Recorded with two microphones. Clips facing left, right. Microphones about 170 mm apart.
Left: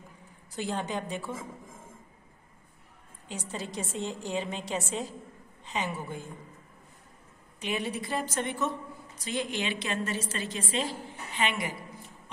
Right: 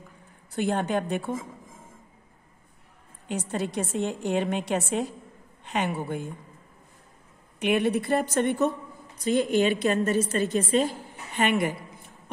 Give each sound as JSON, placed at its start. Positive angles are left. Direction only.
{"t": 0.5, "sound": "a woman's voice", "side_deg": -55}
{"t": 3.3, "sound": "a woman's voice", "side_deg": -60}
{"t": 7.5, "sound": "a woman's voice", "side_deg": -60}